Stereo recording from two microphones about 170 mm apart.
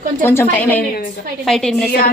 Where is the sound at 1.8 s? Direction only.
60° left (ahead or behind).